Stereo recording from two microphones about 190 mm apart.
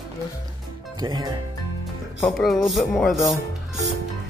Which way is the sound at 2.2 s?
Centre (ahead or behind).